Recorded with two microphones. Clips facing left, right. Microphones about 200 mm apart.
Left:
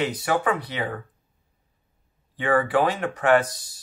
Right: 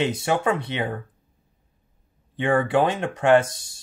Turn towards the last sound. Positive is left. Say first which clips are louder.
# right 2 dB
turn(degrees=-25)  # may be behind; listen again after turning